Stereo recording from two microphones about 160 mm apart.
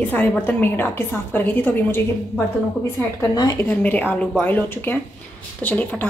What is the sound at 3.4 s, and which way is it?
A woman's voice, 20° left (ahead or behind).